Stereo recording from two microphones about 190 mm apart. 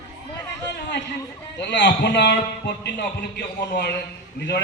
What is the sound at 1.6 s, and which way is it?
A man's voice, 65° left (ahead or behind).